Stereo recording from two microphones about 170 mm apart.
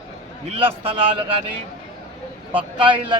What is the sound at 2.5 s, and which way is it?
Speech, 30° right (ahead or behind).